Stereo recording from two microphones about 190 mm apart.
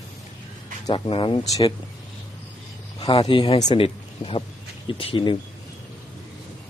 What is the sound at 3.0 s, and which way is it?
Speech, 25° left (ahead or behind).